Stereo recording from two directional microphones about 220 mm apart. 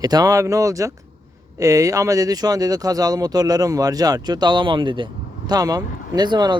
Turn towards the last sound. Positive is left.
turn(degrees=-20)  # may be behind; listen again after turning